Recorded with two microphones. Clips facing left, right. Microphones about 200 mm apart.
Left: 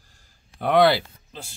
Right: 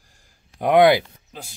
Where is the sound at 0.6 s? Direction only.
15° right (ahead or behind).